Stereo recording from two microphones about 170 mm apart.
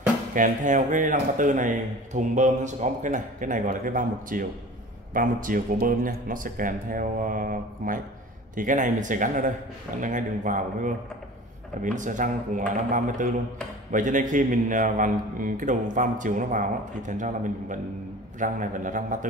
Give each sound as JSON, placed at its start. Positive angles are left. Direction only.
{"t": 0.3, "sound": "speech", "side_deg": -50}